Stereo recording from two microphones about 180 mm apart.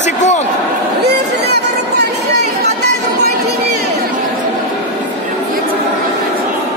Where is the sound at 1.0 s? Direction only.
65° right (ahead or behind).